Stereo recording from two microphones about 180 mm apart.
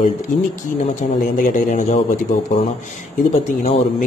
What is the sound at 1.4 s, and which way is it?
A man's voice, 45° left (ahead or behind).